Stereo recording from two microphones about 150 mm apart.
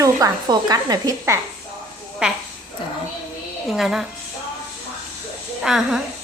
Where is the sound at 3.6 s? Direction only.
Centre (ahead or behind).